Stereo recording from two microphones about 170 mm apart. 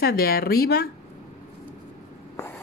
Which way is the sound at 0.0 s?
65° left (ahead or behind).